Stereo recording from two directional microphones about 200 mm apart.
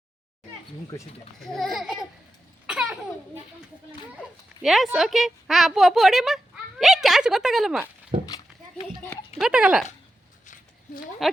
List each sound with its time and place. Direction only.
1.4 s speech: centre (ahead or behind)
2.6 s laughter: 5° right (ahead or behind)
4.6 s speech: centre (ahead or behind)
9.4 s speech: 5° right (ahead or behind)
10.4 s a sound: 40° left (ahead or behind)
11.2 s speech: centre (ahead or behind)